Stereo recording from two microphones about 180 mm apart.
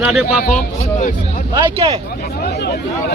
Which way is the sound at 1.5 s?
20° right (ahead or behind).